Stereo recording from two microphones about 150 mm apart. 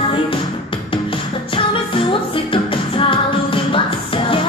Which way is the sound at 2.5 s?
35° left (ahead or behind).